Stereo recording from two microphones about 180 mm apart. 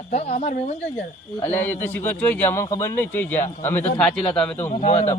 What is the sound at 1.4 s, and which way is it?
A man's voice, 10° left (ahead or behind).